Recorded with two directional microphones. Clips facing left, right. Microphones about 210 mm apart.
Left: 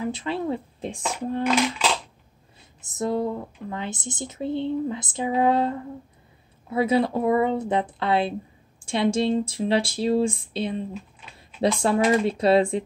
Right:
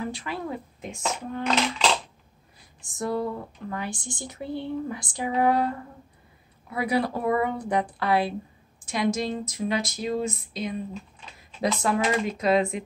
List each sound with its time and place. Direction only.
0.0 s speech: 25° left (ahead or behind)
1.4 s a sound: 10° left (ahead or behind)
2.8 s speech: 20° left (ahead or behind)